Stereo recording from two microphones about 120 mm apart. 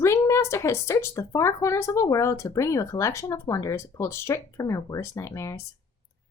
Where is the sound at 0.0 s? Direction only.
25° left (ahead or behind).